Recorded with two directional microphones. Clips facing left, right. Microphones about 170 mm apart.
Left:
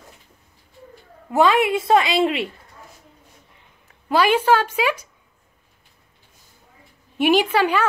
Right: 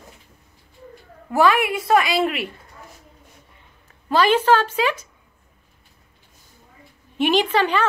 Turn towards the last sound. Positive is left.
turn(degrees=10)  # may be behind; listen again after turning